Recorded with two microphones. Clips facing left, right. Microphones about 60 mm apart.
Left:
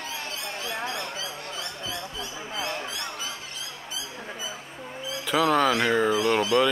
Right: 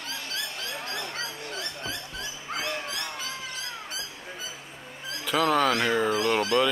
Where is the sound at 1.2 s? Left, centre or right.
Right.